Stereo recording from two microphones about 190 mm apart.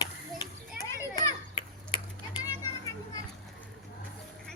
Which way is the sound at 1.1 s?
25° left (ahead or behind).